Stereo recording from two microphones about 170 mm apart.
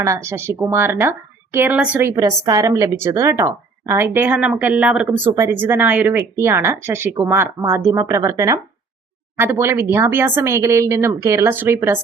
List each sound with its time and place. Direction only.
0.0 s speech: 15° right (ahead or behind)